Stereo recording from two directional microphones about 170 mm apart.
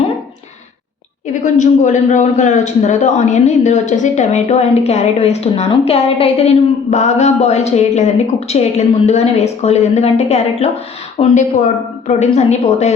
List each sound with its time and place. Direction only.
1.3 s a man's voice: 45° left (ahead or behind)